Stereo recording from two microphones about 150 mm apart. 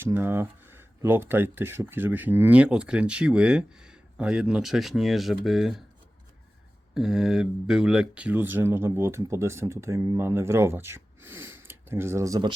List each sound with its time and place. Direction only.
0.0 s speech: 15° right (ahead or behind)
6.9 s speech: 5° right (ahead or behind); by 12.5 s 25° right (ahead or behind)